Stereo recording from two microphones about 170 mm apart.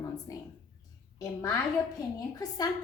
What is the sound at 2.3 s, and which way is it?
Speech, 20° left (ahead or behind).